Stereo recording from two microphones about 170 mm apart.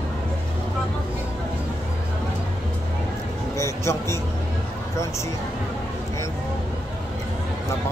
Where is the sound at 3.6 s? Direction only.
15° left (ahead or behind).